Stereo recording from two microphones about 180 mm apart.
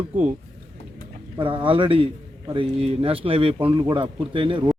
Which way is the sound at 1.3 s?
30° right (ahead or behind).